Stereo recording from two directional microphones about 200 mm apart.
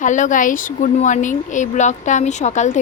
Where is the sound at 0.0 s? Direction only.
40° left (ahead or behind).